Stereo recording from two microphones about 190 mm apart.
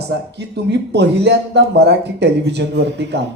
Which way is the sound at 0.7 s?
65° right (ahead or behind).